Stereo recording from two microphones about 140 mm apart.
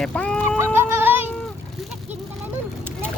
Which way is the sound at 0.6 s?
15° right (ahead or behind).